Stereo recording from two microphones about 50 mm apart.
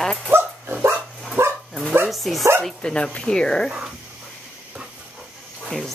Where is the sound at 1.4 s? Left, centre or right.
Right.